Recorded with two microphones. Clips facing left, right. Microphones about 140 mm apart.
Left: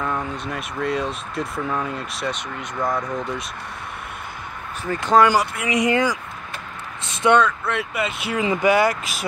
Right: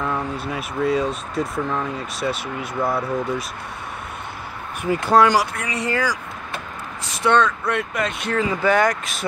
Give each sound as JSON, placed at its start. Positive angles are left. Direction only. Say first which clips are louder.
{"t": 0.0, "sound": "speech", "louder": "right 1 dB", "side_deg": -5}
{"t": 4.8, "sound": "speech", "louder": "right 1 dB", "side_deg": -10}
{"t": 5.7, "sound": "speech", "louder": "left 4 dB", "side_deg": 15}
{"t": 7.3, "sound": "speech", "louder": "even", "side_deg": 5}